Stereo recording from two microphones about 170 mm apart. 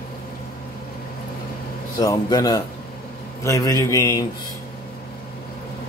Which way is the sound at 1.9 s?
20° left (ahead or behind).